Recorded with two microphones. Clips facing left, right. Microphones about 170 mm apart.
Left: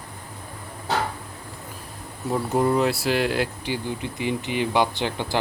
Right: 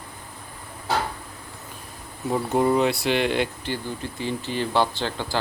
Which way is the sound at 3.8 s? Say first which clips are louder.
Left 2 dB; 15° left (ahead or behind).